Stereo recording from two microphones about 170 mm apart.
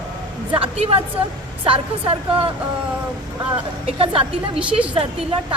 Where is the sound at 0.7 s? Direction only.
35° right (ahead or behind).